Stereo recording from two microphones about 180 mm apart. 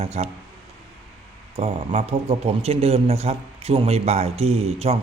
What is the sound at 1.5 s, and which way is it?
A man's voice, 35° right (ahead or behind).